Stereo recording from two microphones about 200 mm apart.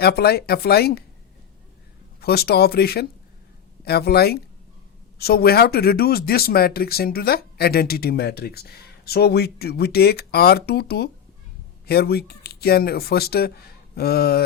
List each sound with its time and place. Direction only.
0.0 s speech: 55° left (ahead or behind)
2.2 s speech: 50° left (ahead or behind)